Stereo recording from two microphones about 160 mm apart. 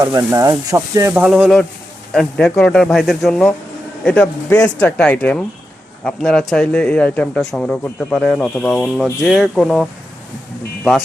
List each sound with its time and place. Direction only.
0.0 s speech: 20° right (ahead or behind)
1.1 s a man's voice: 5° right (ahead or behind)